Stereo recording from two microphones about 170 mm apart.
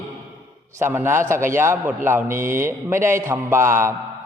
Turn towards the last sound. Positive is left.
turn(degrees=-15)  # may be behind; listen again after turning